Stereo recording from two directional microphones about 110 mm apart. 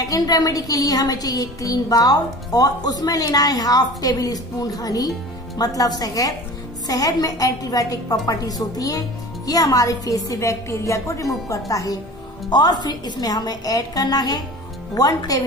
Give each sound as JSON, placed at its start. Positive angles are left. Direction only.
{"t": 0.0, "sound": "a woman's voice", "side_deg": 35}